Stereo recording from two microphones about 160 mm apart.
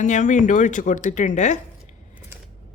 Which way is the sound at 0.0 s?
50° left (ahead or behind).